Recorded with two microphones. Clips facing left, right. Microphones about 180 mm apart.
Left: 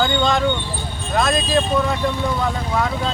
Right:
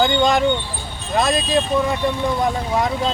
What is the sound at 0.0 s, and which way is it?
Speech, 15° right (ahead or behind).